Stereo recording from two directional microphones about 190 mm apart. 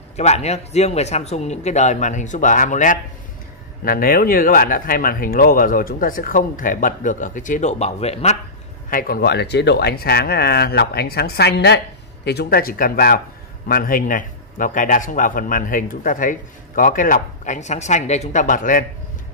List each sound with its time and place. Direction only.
0.1 s a man's voice: 35° left (ahead or behind)
8.9 s a man's voice: 50° left (ahead or behind)